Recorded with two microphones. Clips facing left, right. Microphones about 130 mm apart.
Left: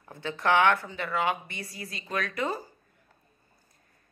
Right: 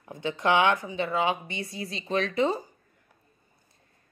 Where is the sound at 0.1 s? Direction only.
20° right (ahead or behind).